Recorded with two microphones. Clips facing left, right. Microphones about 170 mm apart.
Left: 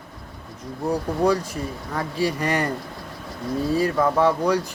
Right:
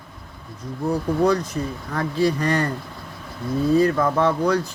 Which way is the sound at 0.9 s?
10° left (ahead or behind).